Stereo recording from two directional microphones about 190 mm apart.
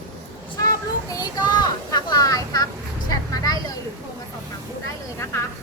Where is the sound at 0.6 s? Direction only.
20° left (ahead or behind).